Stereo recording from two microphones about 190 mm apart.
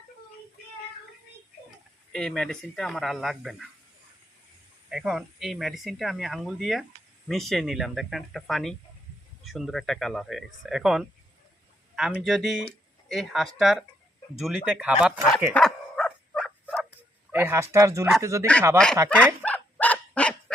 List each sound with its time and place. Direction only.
2.1 s speech: 5° left (ahead or behind)
4.9 s speech: centre (ahead or behind)
15.5 s dog: 5° left (ahead or behind)
17.3 s speech: 15° right (ahead or behind)
19.1 s dog: 5° left (ahead or behind)